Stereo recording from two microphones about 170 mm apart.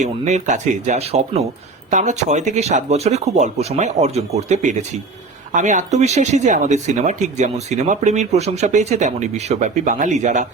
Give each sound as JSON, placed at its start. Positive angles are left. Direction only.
{"t": 0.0, "sound": "speech", "side_deg": -45}